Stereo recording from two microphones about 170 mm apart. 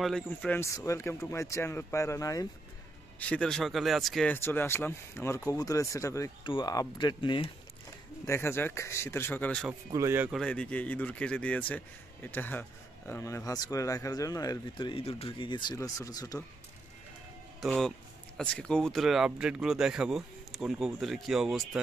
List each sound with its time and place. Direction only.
0.0 s speech: 5° left (ahead or behind)
0.6 s speech: 15° left (ahead or behind)
3.2 s speech: 5° left (ahead or behind)
4.4 s speech: 15° left (ahead or behind); by 7.5 s 30° left (ahead or behind)
8.3 s speech: 15° left (ahead or behind)
9.7 s speech: 15° right (ahead or behind)
10.3 s speech: 5° left (ahead or behind); by 16.4 s 20° left (ahead or behind)
17.6 s speech: 5° left (ahead or behind)